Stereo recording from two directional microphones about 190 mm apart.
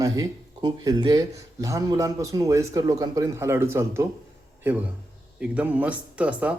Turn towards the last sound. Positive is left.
turn(degrees=-5)  # may be behind; listen again after turning